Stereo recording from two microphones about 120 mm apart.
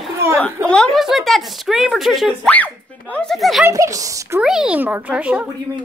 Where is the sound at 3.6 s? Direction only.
25° right (ahead or behind).